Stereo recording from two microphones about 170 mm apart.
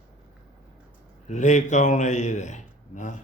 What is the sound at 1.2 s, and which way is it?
Speech, 45° left (ahead or behind).